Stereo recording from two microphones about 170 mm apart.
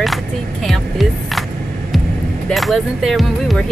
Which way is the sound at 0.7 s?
Centre (ahead or behind).